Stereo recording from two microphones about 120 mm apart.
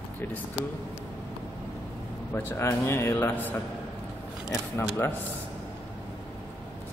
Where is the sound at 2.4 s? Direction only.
20° left (ahead or behind).